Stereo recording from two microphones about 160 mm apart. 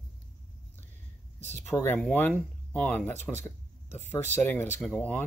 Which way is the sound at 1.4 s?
50° right (ahead or behind).